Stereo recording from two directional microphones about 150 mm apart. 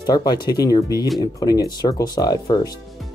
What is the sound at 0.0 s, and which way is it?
Speech, 30° left (ahead or behind).